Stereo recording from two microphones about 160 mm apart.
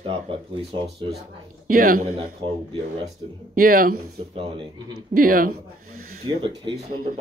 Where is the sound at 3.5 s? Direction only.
65° right (ahead or behind).